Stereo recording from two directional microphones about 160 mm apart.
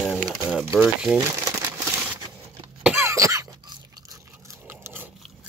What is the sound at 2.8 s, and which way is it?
Cough, 15° right (ahead or behind).